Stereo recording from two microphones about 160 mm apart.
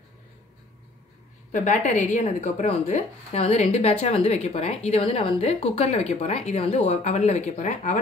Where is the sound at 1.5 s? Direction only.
50° left (ahead or behind).